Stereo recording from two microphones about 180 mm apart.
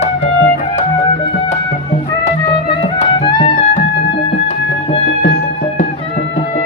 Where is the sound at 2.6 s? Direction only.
30° left (ahead or behind).